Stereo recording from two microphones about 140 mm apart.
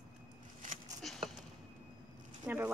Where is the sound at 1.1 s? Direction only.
Centre (ahead or behind).